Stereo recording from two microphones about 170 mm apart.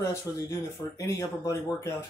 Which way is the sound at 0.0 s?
15° left (ahead or behind).